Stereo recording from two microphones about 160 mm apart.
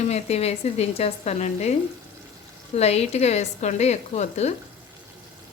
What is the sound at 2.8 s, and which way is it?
Speech, 40° left (ahead or behind).